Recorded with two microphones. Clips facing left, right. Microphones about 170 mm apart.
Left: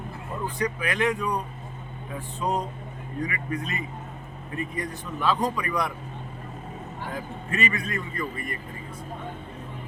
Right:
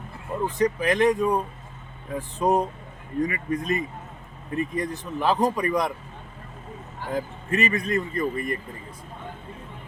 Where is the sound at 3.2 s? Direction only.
40° right (ahead or behind).